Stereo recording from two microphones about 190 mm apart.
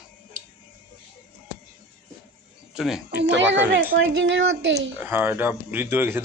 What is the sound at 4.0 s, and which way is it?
Speech, 75° right (ahead or behind).